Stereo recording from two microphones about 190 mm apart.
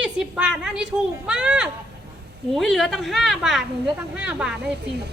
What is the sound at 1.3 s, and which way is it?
A woman's voice, 5° right (ahead or behind).